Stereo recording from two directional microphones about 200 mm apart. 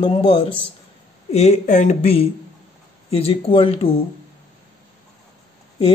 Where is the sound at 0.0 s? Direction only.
25° left (ahead or behind).